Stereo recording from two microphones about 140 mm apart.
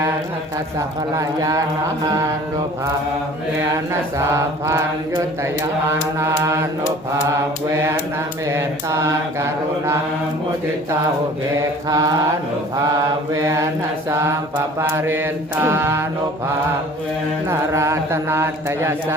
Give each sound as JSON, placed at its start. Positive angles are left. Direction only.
{"t": 0.8, "sound": "mantra", "side_deg": -25}
{"t": 4.3, "sound": "mantra", "side_deg": -20}
{"t": 8.4, "sound": "mantra", "side_deg": -20}
{"t": 11.9, "sound": "mantra", "side_deg": -25}
{"t": 13.3, "sound": "mantra", "side_deg": -20}
{"t": 17.5, "sound": "mantra", "side_deg": -20}